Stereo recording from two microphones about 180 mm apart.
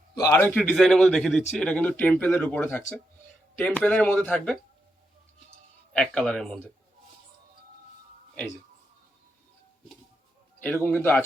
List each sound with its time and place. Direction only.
0.2 s speech: 15° left (ahead or behind)
0.5 s speech: centre (ahead or behind)
5.9 s speech: 5° left (ahead or behind)
10.8 s speech: 10° left (ahead or behind)